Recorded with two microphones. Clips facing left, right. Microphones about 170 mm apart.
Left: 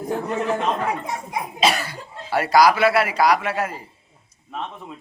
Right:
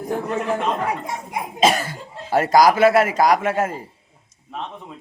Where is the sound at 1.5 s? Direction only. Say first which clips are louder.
Right 4 dB; 45° right (ahead or behind).